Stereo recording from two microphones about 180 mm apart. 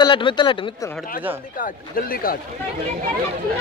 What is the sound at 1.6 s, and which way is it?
Speech, 55° left (ahead or behind).